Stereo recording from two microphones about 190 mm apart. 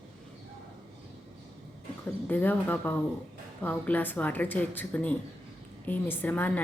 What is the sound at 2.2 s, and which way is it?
A woman's voice, 10° left (ahead or behind).